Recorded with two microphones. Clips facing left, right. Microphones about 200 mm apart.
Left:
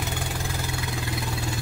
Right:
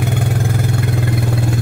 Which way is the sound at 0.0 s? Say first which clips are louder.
Right 11 dB; 55° right (ahead or behind).